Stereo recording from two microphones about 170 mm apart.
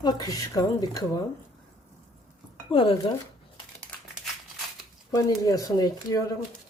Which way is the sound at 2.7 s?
30° left (ahead or behind).